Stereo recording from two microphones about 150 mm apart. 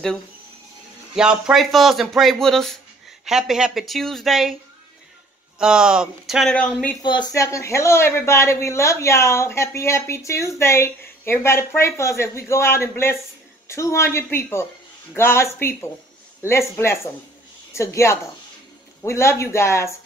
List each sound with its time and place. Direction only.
1.1 s speech: 5° right (ahead or behind)
5.6 s speech: 5° right (ahead or behind)
7.0 s speech: 30° left (ahead or behind)
7.4 s speech: 20° left (ahead or behind)